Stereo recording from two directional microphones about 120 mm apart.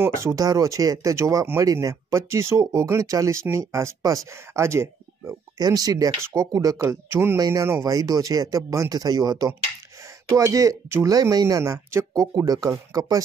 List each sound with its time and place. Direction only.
0.0 s speech: 20° right (ahead or behind)
7.3 s speech: 30° right (ahead or behind)